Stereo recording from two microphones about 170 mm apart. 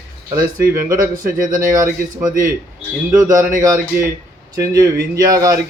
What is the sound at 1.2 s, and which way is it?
Speech, 50° right (ahead or behind).